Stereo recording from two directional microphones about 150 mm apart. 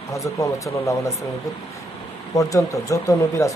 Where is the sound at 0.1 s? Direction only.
20° left (ahead or behind).